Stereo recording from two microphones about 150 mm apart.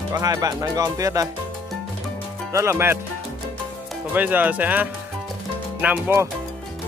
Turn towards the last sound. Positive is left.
turn(degrees=-15)  # may be behind; listen again after turning